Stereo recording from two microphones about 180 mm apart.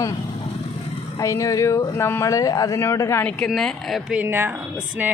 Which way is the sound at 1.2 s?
20° left (ahead or behind).